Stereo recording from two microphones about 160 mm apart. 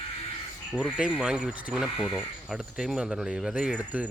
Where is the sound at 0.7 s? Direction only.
5° right (ahead or behind).